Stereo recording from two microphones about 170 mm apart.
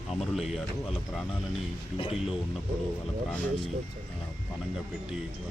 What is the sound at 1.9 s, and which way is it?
Speech, 30° left (ahead or behind).